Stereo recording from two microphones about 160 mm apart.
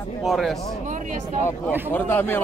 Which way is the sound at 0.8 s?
50° right (ahead or behind).